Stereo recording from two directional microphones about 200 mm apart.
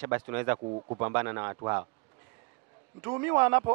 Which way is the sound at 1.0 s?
10° right (ahead or behind).